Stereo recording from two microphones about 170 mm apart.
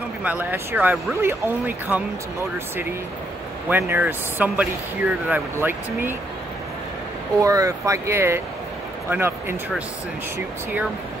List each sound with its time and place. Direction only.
0.2 s speech: 10° right (ahead or behind)
3.6 s speech: 10° right (ahead or behind)
7.3 s speech: 20° right (ahead or behind)